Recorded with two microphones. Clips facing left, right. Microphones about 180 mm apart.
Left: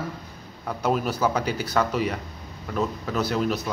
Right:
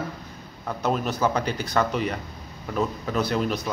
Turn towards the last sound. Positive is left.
turn(degrees=0)  # may be behind; listen again after turning